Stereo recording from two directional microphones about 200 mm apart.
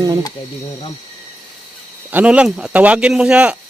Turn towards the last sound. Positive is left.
turn(degrees=-5)  # may be behind; listen again after turning